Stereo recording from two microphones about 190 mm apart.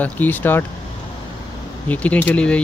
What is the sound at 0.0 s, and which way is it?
Speech, 10° left (ahead or behind).